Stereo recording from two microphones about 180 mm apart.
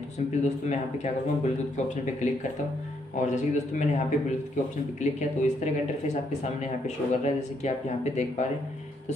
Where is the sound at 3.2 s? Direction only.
40° left (ahead or behind).